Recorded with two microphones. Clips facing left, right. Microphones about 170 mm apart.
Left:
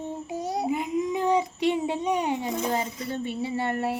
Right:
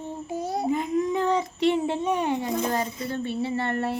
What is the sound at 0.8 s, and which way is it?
Speech, 15° left (ahead or behind).